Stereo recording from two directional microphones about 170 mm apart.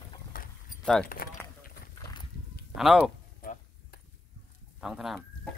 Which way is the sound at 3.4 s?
60° left (ahead or behind).